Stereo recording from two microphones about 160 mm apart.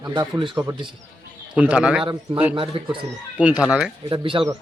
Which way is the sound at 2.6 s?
35° right (ahead or behind).